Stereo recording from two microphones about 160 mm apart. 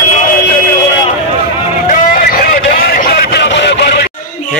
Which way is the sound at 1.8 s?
55° left (ahead or behind).